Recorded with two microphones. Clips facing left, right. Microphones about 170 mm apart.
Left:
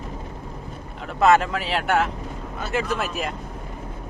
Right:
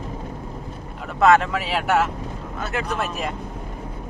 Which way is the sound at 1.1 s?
Centre (ahead or behind).